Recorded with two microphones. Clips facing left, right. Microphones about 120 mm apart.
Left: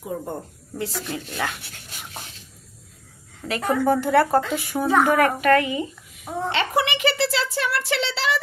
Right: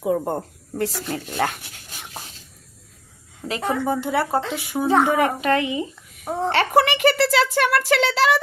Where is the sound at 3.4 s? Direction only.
25° right (ahead or behind).